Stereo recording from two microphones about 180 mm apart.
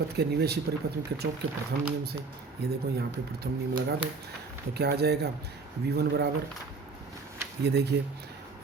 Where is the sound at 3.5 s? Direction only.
65° right (ahead or behind).